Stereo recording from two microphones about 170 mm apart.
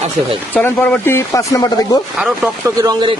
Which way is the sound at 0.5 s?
10° left (ahead or behind).